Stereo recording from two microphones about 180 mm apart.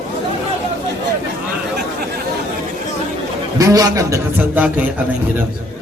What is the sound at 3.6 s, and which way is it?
A man's voice, 20° right (ahead or behind).